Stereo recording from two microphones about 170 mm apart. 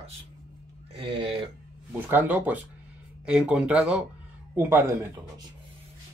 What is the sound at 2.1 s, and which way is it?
Speech, 10° right (ahead or behind).